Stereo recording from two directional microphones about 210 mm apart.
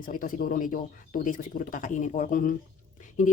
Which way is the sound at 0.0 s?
40° left (ahead or behind).